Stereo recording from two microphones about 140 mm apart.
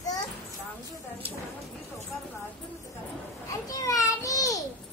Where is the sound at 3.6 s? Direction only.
25° left (ahead or behind).